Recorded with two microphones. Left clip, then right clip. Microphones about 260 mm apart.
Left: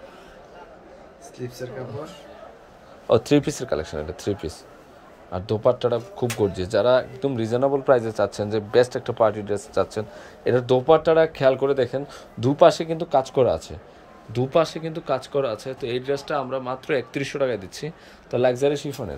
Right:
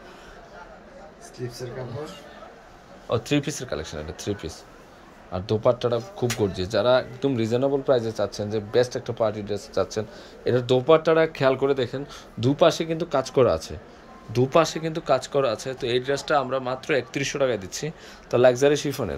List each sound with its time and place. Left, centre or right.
1.4 s speech: centre
3.1 s speech: left
8.3 s speech: left
9.0 s speech: centre